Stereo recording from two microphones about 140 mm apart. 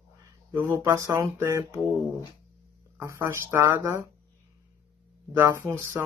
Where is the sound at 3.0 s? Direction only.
20° right (ahead or behind).